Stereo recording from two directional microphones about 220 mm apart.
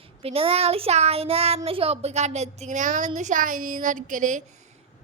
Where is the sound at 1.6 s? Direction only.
25° right (ahead or behind).